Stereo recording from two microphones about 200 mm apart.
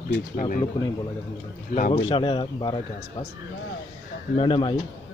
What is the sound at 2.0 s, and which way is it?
Speech, 25° left (ahead or behind).